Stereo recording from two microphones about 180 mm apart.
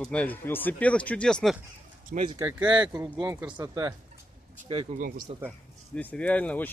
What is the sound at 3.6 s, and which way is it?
Speech, 20° right (ahead or behind).